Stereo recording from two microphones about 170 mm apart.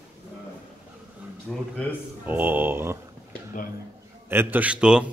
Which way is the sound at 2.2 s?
10° right (ahead or behind).